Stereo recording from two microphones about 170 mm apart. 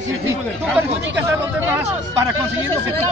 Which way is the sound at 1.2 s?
15° right (ahead or behind).